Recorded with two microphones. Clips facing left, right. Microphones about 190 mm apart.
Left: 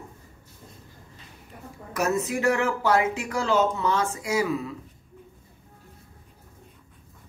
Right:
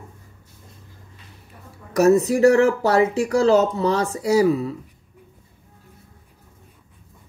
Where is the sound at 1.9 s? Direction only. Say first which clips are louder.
Right 10 dB; 35° right (ahead or behind).